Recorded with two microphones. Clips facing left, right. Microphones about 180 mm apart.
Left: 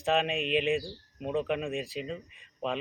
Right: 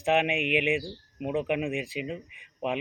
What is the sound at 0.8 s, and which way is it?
Speech, 10° right (ahead or behind).